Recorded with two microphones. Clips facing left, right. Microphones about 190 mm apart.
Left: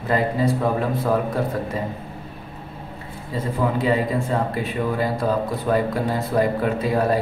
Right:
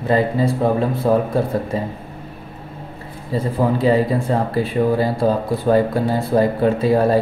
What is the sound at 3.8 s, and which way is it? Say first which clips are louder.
Speech: right 5 dB; 35° right (ahead or behind).